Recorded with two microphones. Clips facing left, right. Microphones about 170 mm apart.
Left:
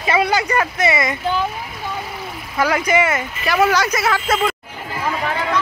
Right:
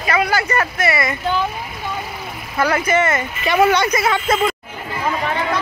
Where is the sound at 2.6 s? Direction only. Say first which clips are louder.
Even; 10° left (ahead or behind).